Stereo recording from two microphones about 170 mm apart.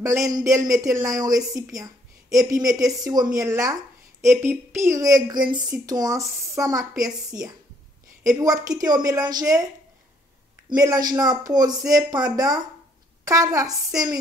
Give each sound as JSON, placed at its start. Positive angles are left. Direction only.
{"t": 0.3, "sound": "a woman's voice", "side_deg": -20}
{"t": 10.8, "sound": "a woman's voice", "side_deg": -20}